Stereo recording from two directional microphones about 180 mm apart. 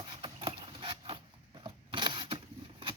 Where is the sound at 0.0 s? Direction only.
25° right (ahead or behind).